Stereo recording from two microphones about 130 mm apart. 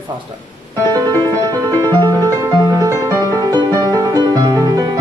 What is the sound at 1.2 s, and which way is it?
Music, 30° right (ahead or behind).